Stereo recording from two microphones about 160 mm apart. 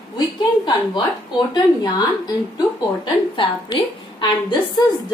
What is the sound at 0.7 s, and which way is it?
A woman's voice, 25° left (ahead or behind).